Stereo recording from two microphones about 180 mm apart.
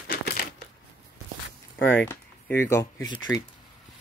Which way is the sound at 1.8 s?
10° left (ahead or behind).